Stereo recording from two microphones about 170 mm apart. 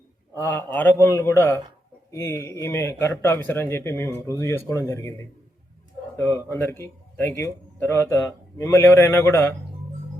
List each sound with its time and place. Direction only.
0.3 s a man's voice: 10° left (ahead or behind)
6.1 s a man's voice: 15° left (ahead or behind)